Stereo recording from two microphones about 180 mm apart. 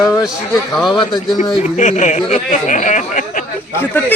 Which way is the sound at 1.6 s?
40° left (ahead or behind).